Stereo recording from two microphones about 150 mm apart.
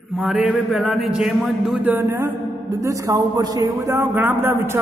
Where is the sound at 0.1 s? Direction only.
Centre (ahead or behind).